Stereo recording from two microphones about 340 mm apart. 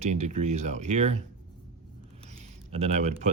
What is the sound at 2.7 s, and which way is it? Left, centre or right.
Speech, centre.